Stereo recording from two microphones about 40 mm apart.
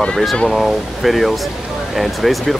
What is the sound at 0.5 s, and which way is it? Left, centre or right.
Speech, centre.